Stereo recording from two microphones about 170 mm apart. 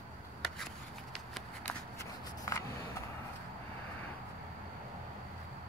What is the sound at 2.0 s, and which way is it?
Shuffling cards, 20° left (ahead or behind).